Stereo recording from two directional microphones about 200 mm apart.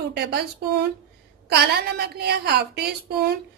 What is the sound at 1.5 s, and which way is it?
A woman's voice, 55° right (ahead or behind).